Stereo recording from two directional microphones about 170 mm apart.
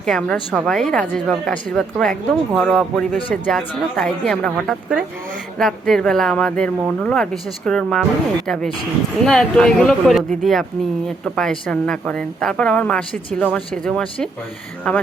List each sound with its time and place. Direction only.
0.0 s speech: 5° left (ahead or behind)
9.2 s speech: 5° left (ahead or behind)